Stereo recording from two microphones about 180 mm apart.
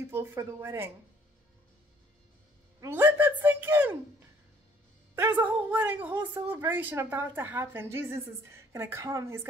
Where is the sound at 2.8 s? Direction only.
10° right (ahead or behind).